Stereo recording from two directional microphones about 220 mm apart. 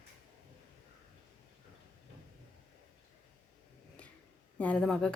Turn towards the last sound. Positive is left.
turn(degrees=5)  # may be behind; listen again after turning